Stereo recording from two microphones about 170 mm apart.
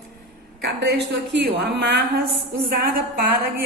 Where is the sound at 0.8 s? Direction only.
80° right.